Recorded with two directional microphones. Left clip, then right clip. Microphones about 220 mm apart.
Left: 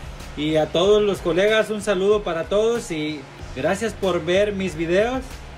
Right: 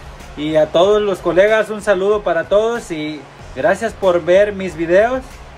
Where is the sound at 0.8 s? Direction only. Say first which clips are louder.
Right 4 dB; centre (ahead or behind).